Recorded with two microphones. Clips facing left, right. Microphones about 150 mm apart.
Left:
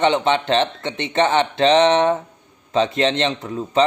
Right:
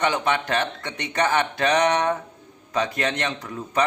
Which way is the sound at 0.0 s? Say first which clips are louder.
Left 5 dB; 25° left (ahead or behind).